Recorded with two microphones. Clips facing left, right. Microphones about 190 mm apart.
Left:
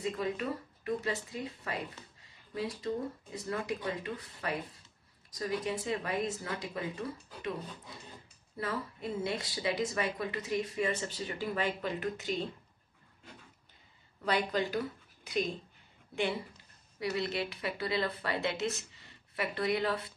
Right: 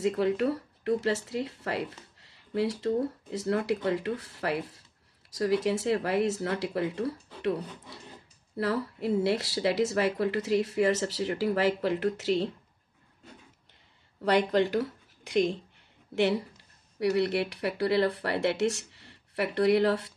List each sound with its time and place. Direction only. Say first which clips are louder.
0.2 s speech: right 8 dB; 70° right (ahead or behind)
8.5 s speech: right 8 dB; 75° right (ahead or behind)
14.2 s speech: right 7 dB; 70° right (ahead or behind)
17.0 s speech: right 8 dB; 70° right (ahead or behind)